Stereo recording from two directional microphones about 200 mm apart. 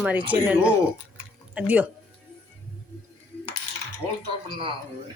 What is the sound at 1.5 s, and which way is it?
Speech, 5° right (ahead or behind).